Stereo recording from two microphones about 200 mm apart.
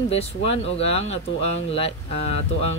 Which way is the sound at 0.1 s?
30° left (ahead or behind).